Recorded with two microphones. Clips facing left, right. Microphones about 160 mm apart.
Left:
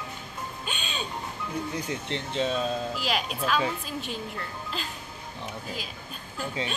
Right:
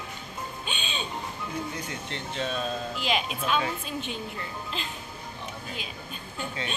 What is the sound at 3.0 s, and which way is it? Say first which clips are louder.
Speech: even; 5° left (ahead or behind).